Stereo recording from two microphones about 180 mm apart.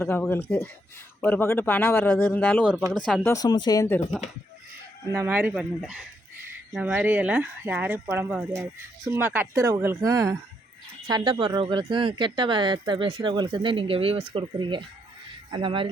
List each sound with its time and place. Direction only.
0.0 s speech: 15° left (ahead or behind)
3.3 s speech: 25° left (ahead or behind)
5.1 s speech: 10° right (ahead or behind); by 15.9 s 30° right (ahead or behind)